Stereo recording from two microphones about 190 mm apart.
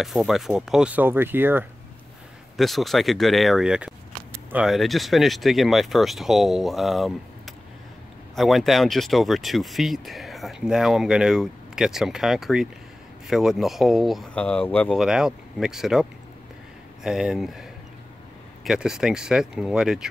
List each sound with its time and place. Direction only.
0.0 s speech: centre (ahead or behind)
2.5 s speech: centre (ahead or behind)